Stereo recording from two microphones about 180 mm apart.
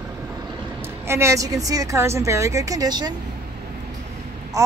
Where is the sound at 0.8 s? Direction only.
15° right (ahead or behind).